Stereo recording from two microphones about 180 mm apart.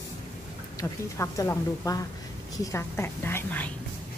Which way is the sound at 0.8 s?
15° left (ahead or behind).